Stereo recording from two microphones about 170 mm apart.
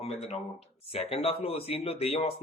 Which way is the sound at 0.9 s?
35° left (ahead or behind).